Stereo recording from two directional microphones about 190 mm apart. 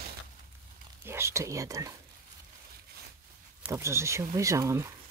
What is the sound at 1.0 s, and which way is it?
Whispering, 15° right (ahead or behind).